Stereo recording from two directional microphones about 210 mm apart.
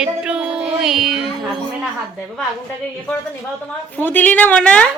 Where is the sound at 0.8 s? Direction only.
Centre (ahead or behind).